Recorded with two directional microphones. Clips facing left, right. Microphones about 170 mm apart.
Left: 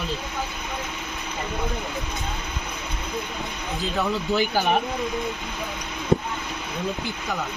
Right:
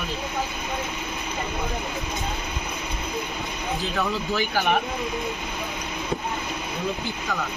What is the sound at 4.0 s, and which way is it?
Speech, 20° left (ahead or behind).